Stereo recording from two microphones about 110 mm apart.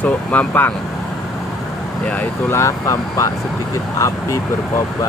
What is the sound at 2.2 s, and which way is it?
Speech, 25° left (ahead or behind).